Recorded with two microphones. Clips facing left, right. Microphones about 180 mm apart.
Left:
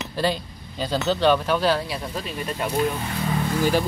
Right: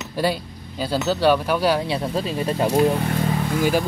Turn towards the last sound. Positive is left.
turn(degrees=-10)  # may be behind; listen again after turning